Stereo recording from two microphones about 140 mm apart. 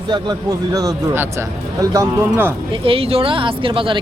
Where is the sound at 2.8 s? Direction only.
40° right (ahead or behind).